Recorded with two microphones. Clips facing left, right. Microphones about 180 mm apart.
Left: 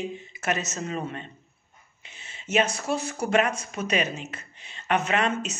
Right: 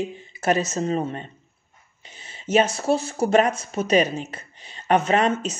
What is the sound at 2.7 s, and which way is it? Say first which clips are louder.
Speech: right 6 dB; 30° right (ahead or behind).